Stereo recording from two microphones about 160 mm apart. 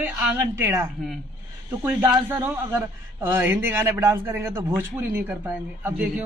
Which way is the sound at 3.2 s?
15° right (ahead or behind).